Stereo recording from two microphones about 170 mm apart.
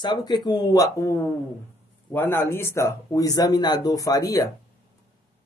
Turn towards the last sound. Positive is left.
turn(degrees=20)  # may be behind; listen again after turning